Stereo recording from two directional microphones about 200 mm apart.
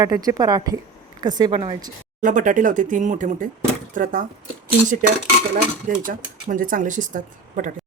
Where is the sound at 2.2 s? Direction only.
40° right (ahead or behind).